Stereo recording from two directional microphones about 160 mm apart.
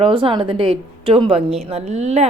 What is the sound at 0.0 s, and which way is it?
Speech, 35° right (ahead or behind).